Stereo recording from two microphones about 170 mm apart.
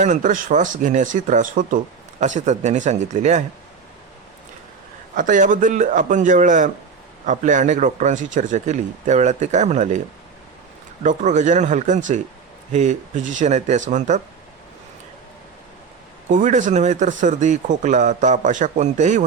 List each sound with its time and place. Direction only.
0.0 s speech: 45° right (ahead or behind)
5.1 s speech: 50° right (ahead or behind)
11.0 s speech: 50° right (ahead or behind)
16.3 s speech: 45° right (ahead or behind)